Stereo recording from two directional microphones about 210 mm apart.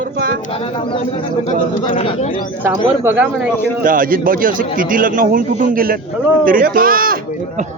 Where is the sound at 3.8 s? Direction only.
40° right (ahead or behind).